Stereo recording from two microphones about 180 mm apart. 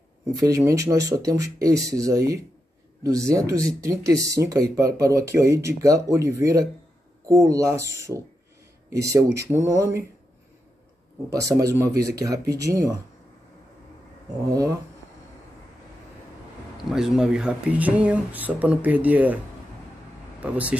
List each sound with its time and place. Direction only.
0.4 s speech: 20° right (ahead or behind)
11.3 s speech: 20° right (ahead or behind)
14.5 s speech: 20° right (ahead or behind)
16.7 s speech: 5° right (ahead or behind)